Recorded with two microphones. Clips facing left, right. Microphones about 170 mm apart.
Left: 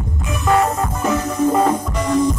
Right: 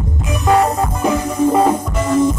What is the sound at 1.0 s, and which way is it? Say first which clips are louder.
Music: right 2 dB; 10° right (ahead or behind).